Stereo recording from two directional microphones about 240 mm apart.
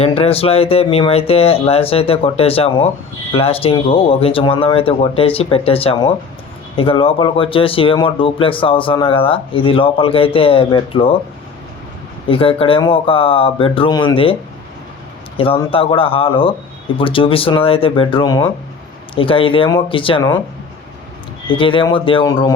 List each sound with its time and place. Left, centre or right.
0.0 s speech: left
12.3 s speech: left
15.4 s speech: left
21.6 s speech: left